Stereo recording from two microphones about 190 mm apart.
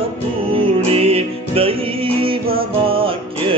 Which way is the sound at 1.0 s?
30° right (ahead or behind).